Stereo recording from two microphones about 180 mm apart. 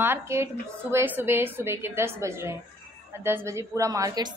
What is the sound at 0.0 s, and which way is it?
A woman's voice, 15° right (ahead or behind).